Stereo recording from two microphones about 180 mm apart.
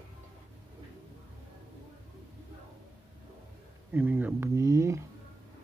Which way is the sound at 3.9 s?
10° right (ahead or behind).